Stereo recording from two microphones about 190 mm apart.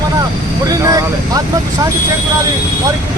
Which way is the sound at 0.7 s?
20° right (ahead or behind).